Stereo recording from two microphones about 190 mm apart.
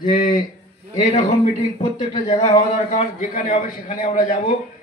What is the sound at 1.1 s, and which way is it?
A man's voice, 35° left (ahead or behind).